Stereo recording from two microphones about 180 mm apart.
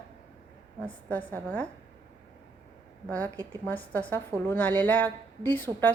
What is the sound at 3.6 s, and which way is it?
A woman's voice, 10° left (ahead or behind).